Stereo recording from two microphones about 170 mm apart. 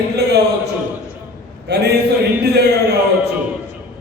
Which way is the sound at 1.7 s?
75° right (ahead or behind).